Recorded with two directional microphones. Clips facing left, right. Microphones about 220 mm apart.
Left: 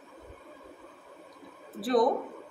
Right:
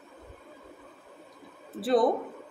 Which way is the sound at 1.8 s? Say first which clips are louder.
Right 1 dB; 25° right (ahead or behind).